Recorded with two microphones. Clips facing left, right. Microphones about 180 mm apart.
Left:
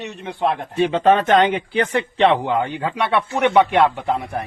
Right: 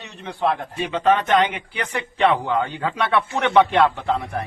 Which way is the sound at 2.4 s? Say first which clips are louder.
Left 2 dB; 20° left (ahead or behind).